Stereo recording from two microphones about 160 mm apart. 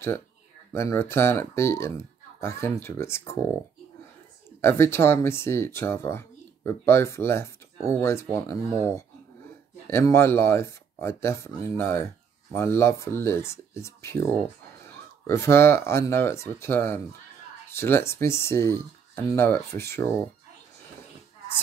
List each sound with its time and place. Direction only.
0.7 s speech: 15° left (ahead or behind)
4.6 s speech: 15° left (ahead or behind)